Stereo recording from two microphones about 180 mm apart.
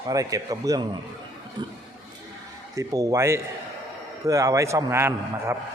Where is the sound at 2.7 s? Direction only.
20° right (ahead or behind).